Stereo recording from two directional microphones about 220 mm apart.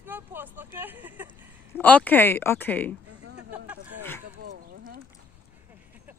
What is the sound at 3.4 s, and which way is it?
Speech, 5° right (ahead or behind).